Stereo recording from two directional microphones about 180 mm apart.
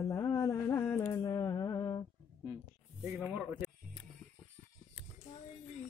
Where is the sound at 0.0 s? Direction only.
20° left (ahead or behind).